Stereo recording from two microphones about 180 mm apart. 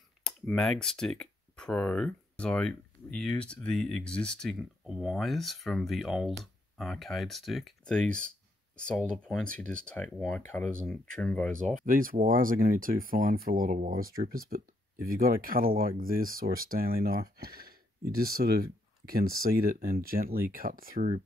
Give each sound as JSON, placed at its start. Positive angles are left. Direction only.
{"t": 0.2, "sound": "speech", "side_deg": 5}
{"t": 11.8, "sound": "speech", "side_deg": -50}